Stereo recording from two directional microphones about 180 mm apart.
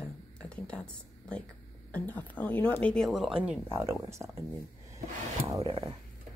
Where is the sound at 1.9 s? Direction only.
10° left (ahead or behind).